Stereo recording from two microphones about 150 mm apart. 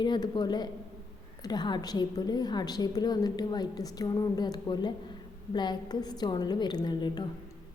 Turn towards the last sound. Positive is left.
turn(degrees=30)  # may be behind; listen again after turning